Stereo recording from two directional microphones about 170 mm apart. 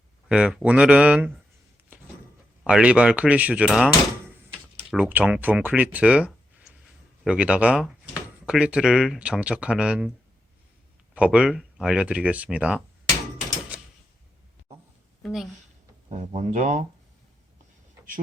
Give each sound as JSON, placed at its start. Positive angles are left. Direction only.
{"t": 0.3, "sound": "speech", "side_deg": -5}
{"t": 2.6, "sound": "speech", "side_deg": -5}
{"t": 11.1, "sound": "speech", "side_deg": -5}
{"t": 15.2, "sound": "speech", "side_deg": 0}
{"t": 16.0, "sound": "speech", "side_deg": -45}